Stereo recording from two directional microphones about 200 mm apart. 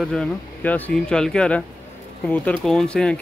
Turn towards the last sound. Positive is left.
turn(degrees=5)  # may be behind; listen again after turning